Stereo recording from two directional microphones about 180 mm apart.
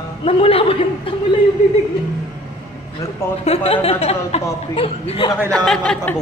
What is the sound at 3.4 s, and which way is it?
A woman's voice, 35° left (ahead or behind).